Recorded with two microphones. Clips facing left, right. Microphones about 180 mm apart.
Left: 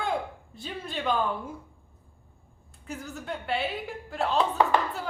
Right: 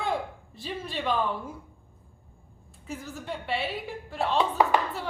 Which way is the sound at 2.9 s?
Centre (ahead or behind).